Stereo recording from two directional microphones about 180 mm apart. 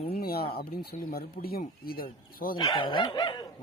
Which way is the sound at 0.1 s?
55° left (ahead or behind).